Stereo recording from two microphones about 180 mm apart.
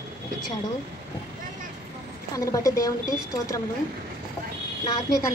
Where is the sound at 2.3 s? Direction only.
20° left (ahead or behind).